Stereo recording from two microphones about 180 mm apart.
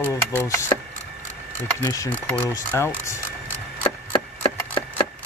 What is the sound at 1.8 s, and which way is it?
Speech, 20° left (ahead or behind).